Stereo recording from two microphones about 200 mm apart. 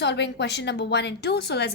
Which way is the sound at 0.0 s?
60° left (ahead or behind).